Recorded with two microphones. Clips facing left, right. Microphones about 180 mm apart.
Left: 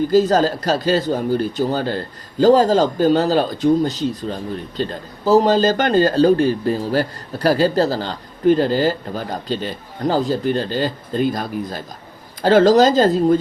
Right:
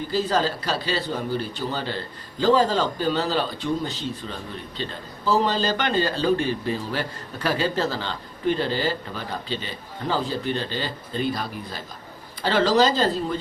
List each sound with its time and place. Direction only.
0.1 s speech: 45° left (ahead or behind)